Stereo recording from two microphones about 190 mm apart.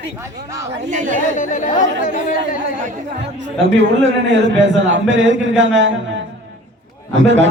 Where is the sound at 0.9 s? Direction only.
40° right (ahead or behind).